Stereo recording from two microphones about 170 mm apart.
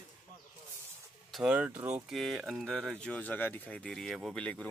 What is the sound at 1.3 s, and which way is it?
Speech, 5° right (ahead or behind).